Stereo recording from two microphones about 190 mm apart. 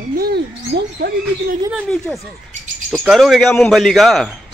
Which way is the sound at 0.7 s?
70° right (ahead or behind).